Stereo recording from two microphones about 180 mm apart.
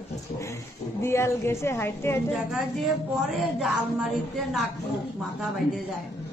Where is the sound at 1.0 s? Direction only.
15° left (ahead or behind).